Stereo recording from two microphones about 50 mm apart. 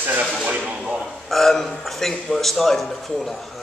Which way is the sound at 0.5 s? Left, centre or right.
Right.